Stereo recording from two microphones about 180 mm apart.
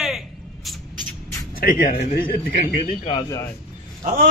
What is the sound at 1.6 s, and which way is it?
A man's voice, 50° left (ahead or behind).